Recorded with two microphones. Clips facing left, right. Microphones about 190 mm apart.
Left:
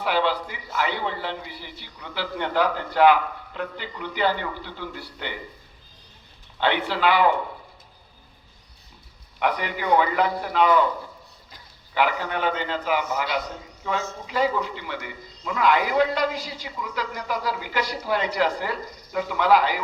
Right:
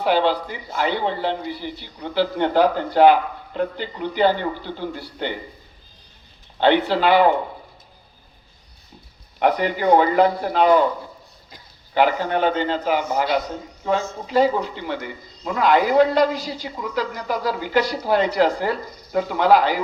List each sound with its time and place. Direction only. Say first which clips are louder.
0.0 s a man's voice: right 5 dB; 30° right (ahead or behind)
6.6 s a man's voice: right 6 dB; 35° right (ahead or behind)
9.4 s a man's voice: right 6 dB; 35° right (ahead or behind)
11.9 s a man's voice: right 5 dB; 35° right (ahead or behind)